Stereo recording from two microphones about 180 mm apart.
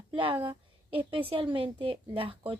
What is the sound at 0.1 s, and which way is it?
A woman's voice, 30° right (ahead or behind).